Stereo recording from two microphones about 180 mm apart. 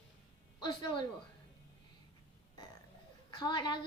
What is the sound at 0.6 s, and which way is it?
Speech, 25° left (ahead or behind).